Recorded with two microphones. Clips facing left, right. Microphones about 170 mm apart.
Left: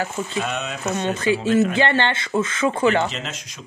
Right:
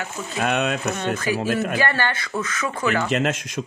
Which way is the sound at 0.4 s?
60° right (ahead or behind).